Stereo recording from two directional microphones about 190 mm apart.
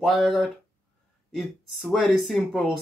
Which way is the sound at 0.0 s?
Centre (ahead or behind).